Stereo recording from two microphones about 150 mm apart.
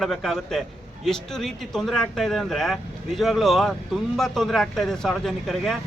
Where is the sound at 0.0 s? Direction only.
Centre (ahead or behind).